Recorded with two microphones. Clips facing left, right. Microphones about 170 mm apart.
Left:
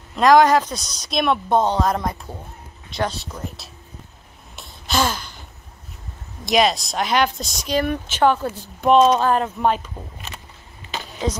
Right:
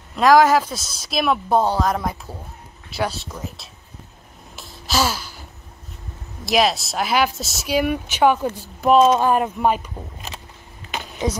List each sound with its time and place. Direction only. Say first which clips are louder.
0.1 s speech: even; centre (ahead or behind)
4.6 s gasp: even; 5° right (ahead or behind)
6.4 s speech: left 1 dB; centre (ahead or behind)
10.9 s a sound: right 1 dB; 15° right (ahead or behind)